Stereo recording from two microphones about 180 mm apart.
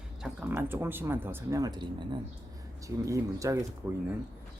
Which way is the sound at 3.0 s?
20° right (ahead or behind).